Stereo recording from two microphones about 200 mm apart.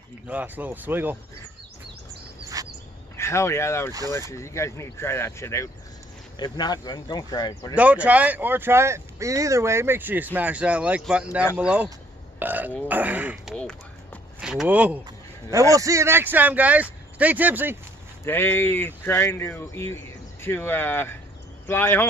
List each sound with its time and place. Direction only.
0.3 s speech: 10° right (ahead or behind)
2.5 s bird: 15° right (ahead or behind)
3.2 s speech: 15° left (ahead or behind)
7.7 s speech: 5° right (ahead or behind)
13.6 s a sound: 5° left (ahead or behind)
14.4 s speech: 5° right (ahead or behind)
18.2 s speech: 10° left (ahead or behind)